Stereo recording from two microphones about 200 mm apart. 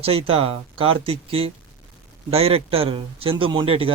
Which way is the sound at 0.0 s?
30° right (ahead or behind).